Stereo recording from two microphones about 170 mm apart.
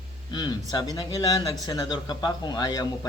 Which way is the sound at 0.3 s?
25° left (ahead or behind).